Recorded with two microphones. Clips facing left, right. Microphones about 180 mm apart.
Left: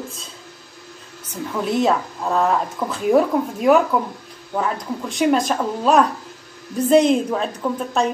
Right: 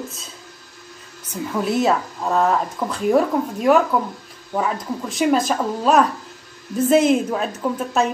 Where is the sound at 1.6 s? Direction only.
Centre (ahead or behind).